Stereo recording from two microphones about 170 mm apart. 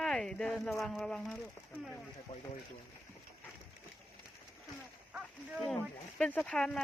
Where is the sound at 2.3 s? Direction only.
35° left (ahead or behind).